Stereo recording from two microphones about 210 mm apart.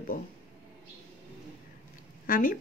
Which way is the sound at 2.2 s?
40° left (ahead or behind).